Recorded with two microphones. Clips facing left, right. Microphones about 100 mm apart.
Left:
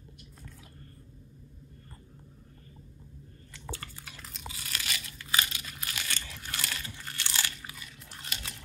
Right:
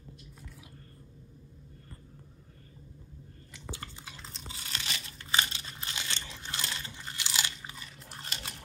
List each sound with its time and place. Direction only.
3.5 s crunch: 20° right (ahead or behind)
7.6 s crunch: 30° right (ahead or behind)